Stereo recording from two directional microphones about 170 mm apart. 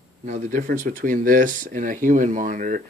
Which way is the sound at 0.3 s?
50° right (ahead or behind).